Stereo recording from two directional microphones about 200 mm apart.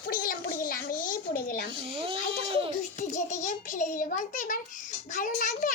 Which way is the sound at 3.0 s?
40° left (ahead or behind).